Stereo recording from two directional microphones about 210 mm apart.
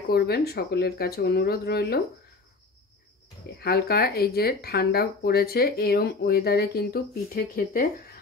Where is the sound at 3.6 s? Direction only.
50° left (ahead or behind).